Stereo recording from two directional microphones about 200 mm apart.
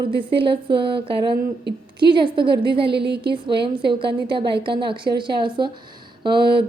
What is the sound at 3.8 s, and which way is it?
Speech, 25° right (ahead or behind).